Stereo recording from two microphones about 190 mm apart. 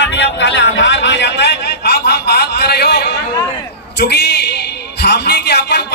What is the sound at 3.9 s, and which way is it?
A woman's voice, 60° left (ahead or behind).